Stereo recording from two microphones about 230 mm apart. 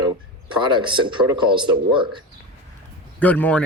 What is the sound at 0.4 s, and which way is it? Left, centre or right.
Speech, right.